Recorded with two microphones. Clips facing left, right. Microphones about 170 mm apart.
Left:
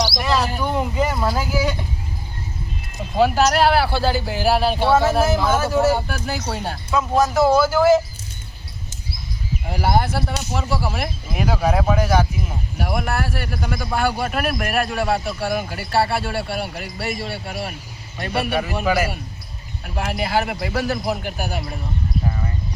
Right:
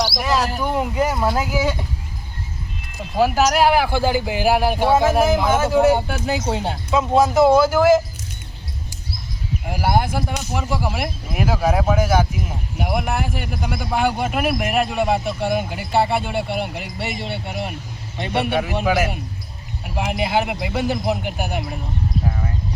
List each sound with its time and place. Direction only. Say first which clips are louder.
0.1 s a sound: even; 10° right (ahead or behind)
3.2 s speech: even; 10° right (ahead or behind)
9.6 s speech: even; 10° right (ahead or behind)